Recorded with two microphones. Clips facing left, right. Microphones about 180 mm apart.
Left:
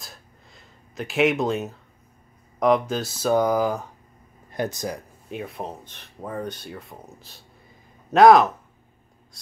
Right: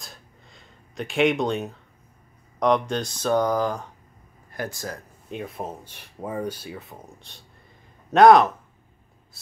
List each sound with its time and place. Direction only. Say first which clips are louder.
0.0 s a sound: even; centre (ahead or behind)
2.6 s speech: left 1 dB; 5° left (ahead or behind)
4.5 s speech: left 4 dB; 20° left (ahead or behind)
5.3 s speech: even; centre (ahead or behind)